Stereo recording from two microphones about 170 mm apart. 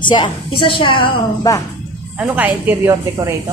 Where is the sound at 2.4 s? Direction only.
10° right (ahead or behind).